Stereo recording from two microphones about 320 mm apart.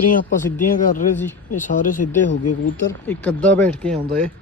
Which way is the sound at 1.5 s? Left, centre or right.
Left.